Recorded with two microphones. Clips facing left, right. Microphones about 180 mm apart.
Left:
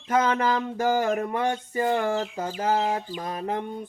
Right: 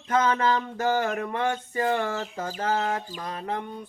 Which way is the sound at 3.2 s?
20° left (ahead or behind).